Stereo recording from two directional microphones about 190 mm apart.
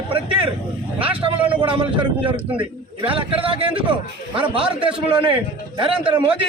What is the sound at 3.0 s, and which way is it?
A man's voice, 25° right (ahead or behind).